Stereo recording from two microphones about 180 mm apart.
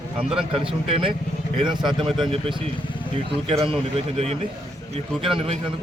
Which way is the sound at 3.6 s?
30° right (ahead or behind).